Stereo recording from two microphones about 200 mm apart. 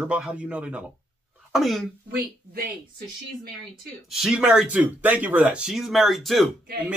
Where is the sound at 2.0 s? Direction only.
50° right (ahead or behind).